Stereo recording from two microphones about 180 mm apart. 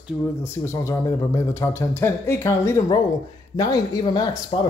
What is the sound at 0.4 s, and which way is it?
Speech, 15° left (ahead or behind).